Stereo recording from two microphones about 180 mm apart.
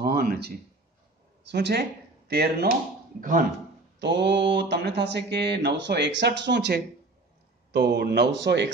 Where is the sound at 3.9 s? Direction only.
75° right (ahead or behind).